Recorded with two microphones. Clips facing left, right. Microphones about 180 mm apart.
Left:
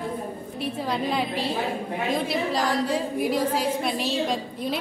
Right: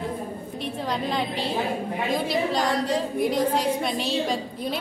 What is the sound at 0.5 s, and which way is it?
A woman's voice, 5° left (ahead or behind).